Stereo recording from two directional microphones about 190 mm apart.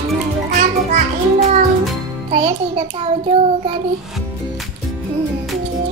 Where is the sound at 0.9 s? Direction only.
40° right (ahead or behind).